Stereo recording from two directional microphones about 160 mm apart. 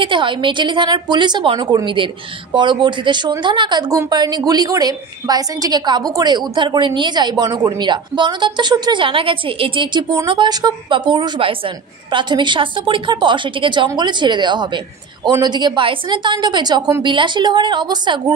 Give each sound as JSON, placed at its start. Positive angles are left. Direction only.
{"t": 0.0, "sound": "a woman's voice", "side_deg": -30}